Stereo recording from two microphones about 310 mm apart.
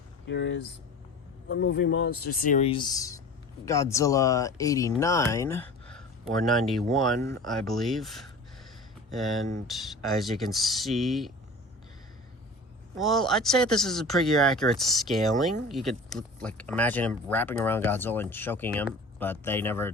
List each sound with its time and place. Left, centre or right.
0.3 s speech: left; by 11.3 s centre
13.0 s speech: centre